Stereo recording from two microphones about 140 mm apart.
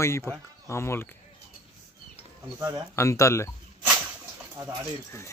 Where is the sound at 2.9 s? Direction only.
20° left (ahead or behind).